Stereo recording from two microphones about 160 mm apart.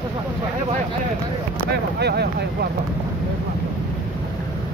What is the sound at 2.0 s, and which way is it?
Speech, 90° right.